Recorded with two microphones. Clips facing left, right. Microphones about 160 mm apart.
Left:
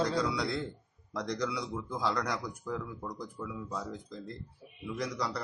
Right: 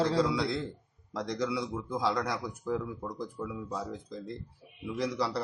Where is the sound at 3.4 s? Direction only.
25° right (ahead or behind).